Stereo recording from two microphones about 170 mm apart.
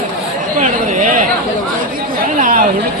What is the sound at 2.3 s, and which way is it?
Speech, 50° right (ahead or behind).